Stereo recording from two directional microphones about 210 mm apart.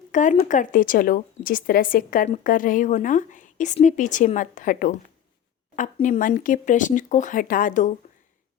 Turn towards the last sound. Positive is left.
turn(degrees=40)  # may be behind; listen again after turning